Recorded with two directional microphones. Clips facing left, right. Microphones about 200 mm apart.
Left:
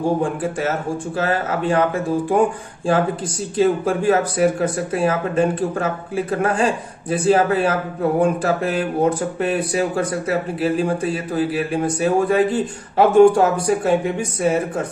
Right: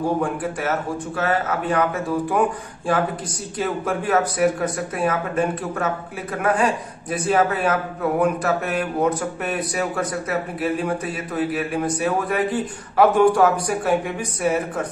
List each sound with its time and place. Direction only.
0.2 s speech: 30° left (ahead or behind)
3.5 s speech: 30° left (ahead or behind)